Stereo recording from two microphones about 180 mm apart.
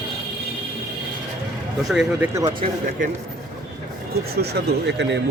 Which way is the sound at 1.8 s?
5° right (ahead or behind).